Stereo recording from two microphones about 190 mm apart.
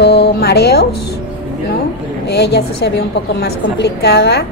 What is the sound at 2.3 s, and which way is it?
A woman's voice, 60° left (ahead or behind).